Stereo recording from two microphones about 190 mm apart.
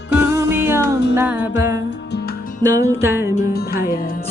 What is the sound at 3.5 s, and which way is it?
Music, 50° left (ahead or behind).